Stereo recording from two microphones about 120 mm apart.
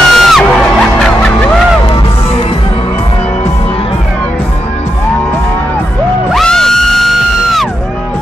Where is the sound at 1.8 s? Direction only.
50° left (ahead or behind).